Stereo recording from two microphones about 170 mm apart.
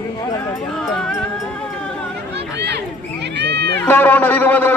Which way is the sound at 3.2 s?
80° right.